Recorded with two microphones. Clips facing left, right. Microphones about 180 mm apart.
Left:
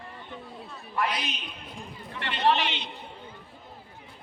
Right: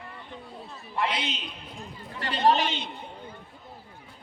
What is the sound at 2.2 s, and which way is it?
Speech, 40° right (ahead or behind).